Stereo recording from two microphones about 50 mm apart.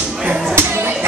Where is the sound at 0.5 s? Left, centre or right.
Right.